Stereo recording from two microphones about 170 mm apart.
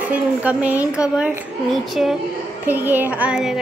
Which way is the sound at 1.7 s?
Centre (ahead or behind).